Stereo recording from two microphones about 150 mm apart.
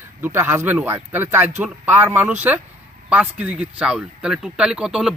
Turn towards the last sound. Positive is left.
turn(degrees=-5)  # may be behind; listen again after turning